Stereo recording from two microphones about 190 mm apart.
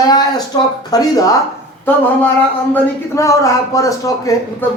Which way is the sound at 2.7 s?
15° left (ahead or behind).